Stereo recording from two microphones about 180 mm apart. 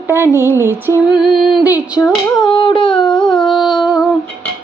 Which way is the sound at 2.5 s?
25° left (ahead or behind).